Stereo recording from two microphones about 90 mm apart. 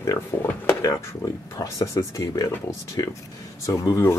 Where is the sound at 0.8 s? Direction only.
40° left (ahead or behind).